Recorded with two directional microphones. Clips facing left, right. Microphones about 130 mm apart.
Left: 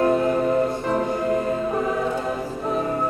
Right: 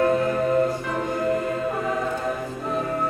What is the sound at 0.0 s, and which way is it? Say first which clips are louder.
Music: left 1 dB; 25° left (ahead or behind).